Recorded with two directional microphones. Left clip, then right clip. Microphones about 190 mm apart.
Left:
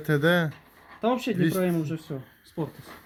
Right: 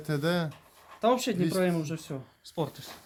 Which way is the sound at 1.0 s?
10° right (ahead or behind).